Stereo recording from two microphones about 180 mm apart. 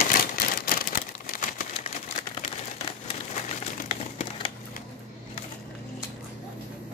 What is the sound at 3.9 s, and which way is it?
Crumpling, 40° left (ahead or behind).